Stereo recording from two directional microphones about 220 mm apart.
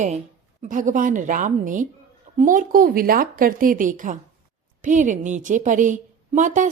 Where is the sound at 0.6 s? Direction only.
35° right (ahead or behind).